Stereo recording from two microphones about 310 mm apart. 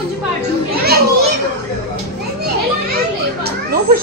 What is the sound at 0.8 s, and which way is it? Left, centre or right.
Children playing, right.